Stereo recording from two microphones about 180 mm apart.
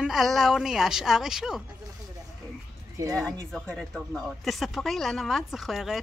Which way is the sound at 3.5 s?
5° left (ahead or behind).